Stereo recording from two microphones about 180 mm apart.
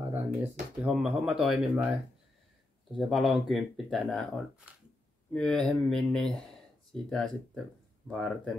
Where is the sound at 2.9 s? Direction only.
Centre (ahead or behind).